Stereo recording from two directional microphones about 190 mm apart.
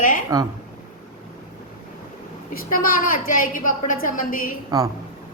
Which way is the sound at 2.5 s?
50° left (ahead or behind).